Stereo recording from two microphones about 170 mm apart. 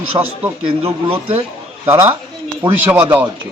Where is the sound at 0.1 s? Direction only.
25° right (ahead or behind).